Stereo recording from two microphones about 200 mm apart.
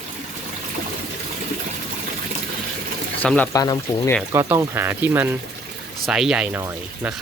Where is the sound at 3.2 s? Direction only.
5° left (ahead or behind).